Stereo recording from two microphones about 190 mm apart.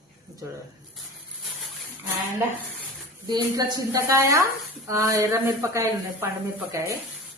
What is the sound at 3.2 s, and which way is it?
A woman's voice, 20° right (ahead or behind).